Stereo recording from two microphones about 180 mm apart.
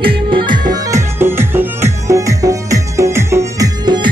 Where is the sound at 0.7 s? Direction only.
15° right (ahead or behind).